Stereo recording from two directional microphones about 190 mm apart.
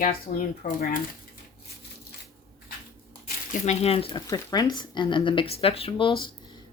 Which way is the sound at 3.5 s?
35° left (ahead or behind).